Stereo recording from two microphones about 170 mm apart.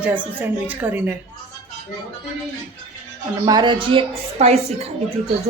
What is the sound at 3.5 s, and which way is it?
Speech, 25° right (ahead or behind).